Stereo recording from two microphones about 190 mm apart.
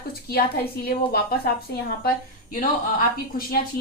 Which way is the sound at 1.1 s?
55° left (ahead or behind).